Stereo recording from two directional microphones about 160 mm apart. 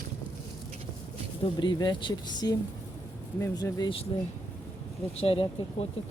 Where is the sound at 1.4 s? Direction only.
30° left (ahead or behind).